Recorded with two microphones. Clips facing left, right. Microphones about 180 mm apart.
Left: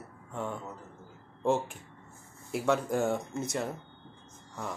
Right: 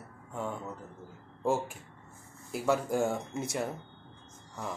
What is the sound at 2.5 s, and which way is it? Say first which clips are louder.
Speech: left 1 dB; 5° right (ahead or behind).